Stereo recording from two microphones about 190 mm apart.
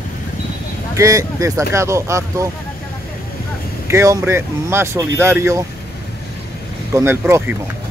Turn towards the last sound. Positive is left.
turn(degrees=-15)  # may be behind; listen again after turning